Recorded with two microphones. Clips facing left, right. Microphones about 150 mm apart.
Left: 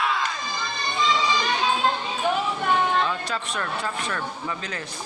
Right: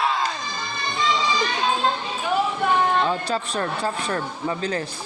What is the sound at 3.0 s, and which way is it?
Speech, 35° right (ahead or behind).